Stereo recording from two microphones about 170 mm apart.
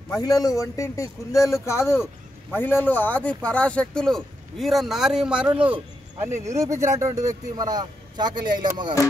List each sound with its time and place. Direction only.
0.2 s a man's voice: 20° left (ahead or behind); by 5.8 s 5° right (ahead or behind)
6.4 s a man's voice: 15° right (ahead or behind)